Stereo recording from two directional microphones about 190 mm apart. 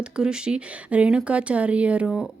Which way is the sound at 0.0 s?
5° right (ahead or behind).